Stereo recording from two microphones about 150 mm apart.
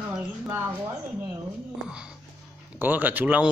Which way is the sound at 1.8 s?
5° right (ahead or behind).